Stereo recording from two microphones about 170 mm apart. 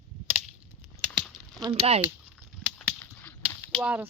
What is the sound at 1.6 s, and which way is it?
Speech, 35° right (ahead or behind).